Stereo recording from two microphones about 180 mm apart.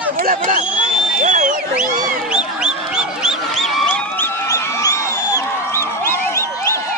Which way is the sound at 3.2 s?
Centre (ahead or behind).